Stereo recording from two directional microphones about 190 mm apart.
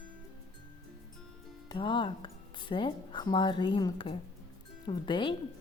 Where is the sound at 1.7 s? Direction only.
25° left (ahead or behind).